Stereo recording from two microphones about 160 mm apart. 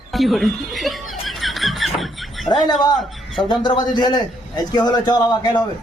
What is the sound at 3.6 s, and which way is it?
A man's voice, 25° left (ahead or behind).